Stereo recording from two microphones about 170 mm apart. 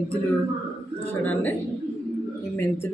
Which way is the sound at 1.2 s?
10° left (ahead or behind).